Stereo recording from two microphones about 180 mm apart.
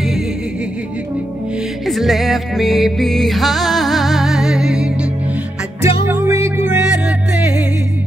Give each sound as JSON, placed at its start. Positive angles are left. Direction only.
{"t": 1.9, "sound": "music", "side_deg": 0}
{"t": 5.8, "sound": "music", "side_deg": -15}